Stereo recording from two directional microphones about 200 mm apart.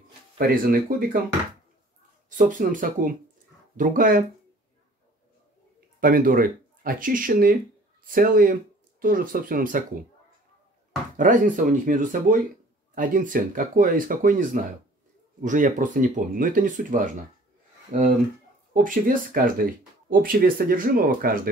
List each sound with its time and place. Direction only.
0.4 s speech: 45° right (ahead or behind)
2.2 s speech: 40° right (ahead or behind)
5.9 s speech: 45° right (ahead or behind)
11.1 s speech: 40° right (ahead or behind)